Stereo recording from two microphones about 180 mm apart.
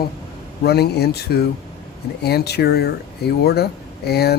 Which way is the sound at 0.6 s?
65° left (ahead or behind).